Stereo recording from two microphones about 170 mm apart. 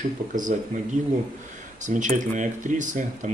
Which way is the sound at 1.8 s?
45° right (ahead or behind).